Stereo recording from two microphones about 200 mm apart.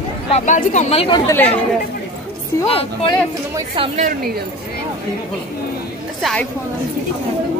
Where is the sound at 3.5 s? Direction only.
25° right (ahead or behind).